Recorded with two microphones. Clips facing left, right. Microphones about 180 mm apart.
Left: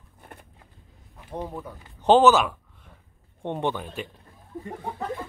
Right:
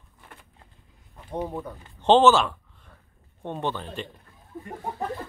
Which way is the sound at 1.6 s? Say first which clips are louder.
Left 1 dB; 5° left (ahead or behind).